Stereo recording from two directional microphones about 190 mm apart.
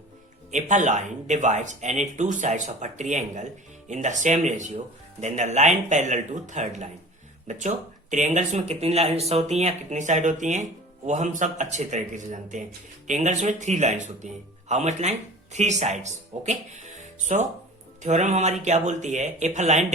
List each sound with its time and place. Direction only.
0.5 s speech: 40° right (ahead or behind)